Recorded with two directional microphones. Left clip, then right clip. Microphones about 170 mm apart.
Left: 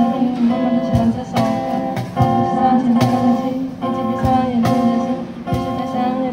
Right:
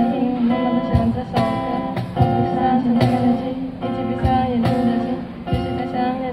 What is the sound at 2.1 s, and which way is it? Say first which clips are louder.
Music: left 3 dB; 25° right (ahead or behind).